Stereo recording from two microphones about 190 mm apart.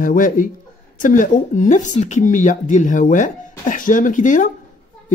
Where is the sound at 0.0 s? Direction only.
45° left (ahead or behind).